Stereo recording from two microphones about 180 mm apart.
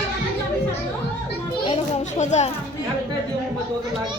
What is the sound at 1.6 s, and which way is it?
Children playing, 35° left (ahead or behind).